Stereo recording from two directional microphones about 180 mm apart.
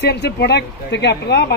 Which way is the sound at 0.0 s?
65° left (ahead or behind).